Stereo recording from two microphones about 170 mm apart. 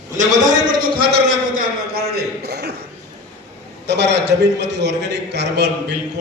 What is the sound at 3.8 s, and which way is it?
A man's voice, 90° right.